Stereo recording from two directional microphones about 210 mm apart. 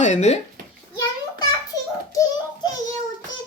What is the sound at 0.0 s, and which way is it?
Speech, 35° left (ahead or behind).